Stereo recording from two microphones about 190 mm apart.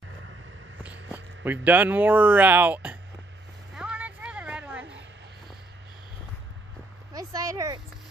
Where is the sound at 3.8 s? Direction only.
5° right (ahead or behind).